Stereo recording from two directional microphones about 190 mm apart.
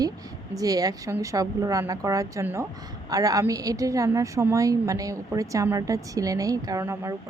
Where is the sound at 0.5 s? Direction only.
20° right (ahead or behind).